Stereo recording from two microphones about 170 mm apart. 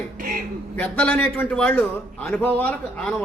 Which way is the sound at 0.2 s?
55° right (ahead or behind).